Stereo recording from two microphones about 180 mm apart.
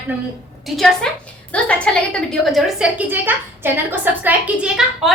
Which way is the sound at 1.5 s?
5° left (ahead or behind).